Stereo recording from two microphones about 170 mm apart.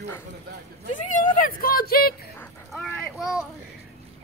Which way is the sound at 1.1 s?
50° left (ahead or behind).